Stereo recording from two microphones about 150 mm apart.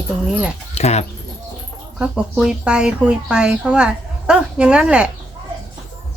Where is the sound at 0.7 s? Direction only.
45° left (ahead or behind).